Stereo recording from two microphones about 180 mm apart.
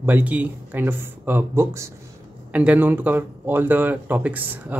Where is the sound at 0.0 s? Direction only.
10° right (ahead or behind).